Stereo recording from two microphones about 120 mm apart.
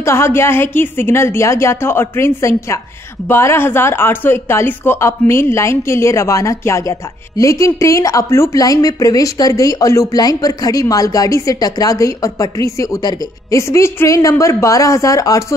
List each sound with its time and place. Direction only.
0.0 s speech: 20° left (ahead or behind)